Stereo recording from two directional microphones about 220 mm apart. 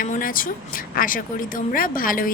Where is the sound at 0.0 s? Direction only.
40° left (ahead or behind).